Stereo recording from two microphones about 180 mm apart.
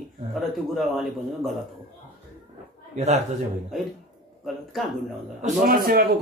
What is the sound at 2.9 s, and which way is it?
Speech, 40° right (ahead or behind).